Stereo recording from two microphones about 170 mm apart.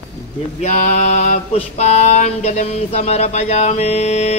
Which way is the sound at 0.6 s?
40° left (ahead or behind).